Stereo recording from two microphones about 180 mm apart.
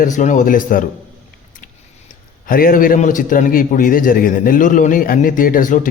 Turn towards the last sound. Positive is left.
turn(degrees=45)  # may be behind; listen again after turning